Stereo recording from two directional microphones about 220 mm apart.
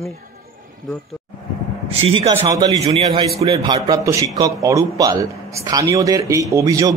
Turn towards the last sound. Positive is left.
turn(degrees=-15)  # may be behind; listen again after turning